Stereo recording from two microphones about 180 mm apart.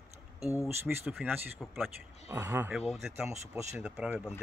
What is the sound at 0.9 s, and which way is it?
Speech, 5° right (ahead or behind).